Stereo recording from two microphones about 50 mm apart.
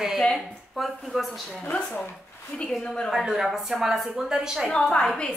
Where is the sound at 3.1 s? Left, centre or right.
Centre.